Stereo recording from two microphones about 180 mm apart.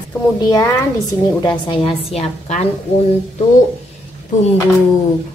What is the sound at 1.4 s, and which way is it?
Speech, 30° left (ahead or behind).